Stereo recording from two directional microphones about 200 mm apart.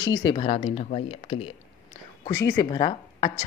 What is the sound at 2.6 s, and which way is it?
Speech, 20° left (ahead or behind).